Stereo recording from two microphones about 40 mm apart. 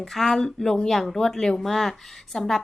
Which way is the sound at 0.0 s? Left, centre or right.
Centre.